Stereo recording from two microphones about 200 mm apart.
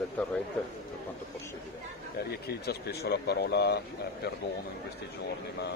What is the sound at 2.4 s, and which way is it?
Speech, 50° left (ahead or behind).